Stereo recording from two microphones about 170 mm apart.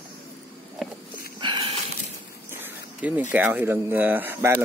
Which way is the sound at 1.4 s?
30° right (ahead or behind).